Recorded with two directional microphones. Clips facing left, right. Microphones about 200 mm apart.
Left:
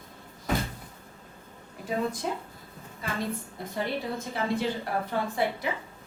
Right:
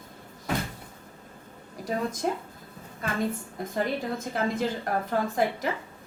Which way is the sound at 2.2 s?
50° right (ahead or behind).